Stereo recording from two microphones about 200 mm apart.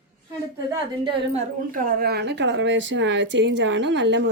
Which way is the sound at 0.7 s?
25° right (ahead or behind).